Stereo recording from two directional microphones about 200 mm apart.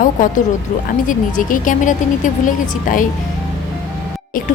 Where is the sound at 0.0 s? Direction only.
40° left (ahead or behind).